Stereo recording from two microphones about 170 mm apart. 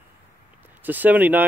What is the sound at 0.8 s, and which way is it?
Speech, 10° right (ahead or behind).